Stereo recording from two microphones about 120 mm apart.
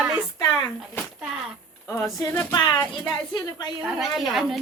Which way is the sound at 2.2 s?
30° left (ahead or behind).